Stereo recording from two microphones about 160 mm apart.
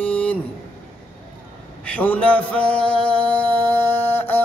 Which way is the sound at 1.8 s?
10° left (ahead or behind).